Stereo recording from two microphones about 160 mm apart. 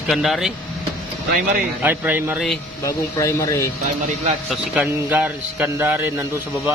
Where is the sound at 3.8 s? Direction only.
45° right (ahead or behind).